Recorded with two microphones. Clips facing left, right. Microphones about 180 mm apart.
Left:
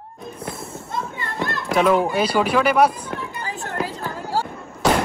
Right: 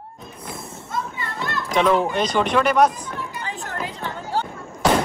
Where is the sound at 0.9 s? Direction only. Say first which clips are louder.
Even; 55° left (ahead or behind).